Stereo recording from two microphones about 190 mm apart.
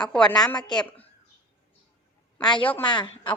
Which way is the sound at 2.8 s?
25° left (ahead or behind).